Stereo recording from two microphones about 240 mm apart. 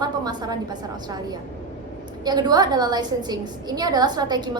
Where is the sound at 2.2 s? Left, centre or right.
Centre.